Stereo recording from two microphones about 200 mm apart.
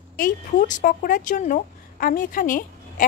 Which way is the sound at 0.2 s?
40° left (ahead or behind).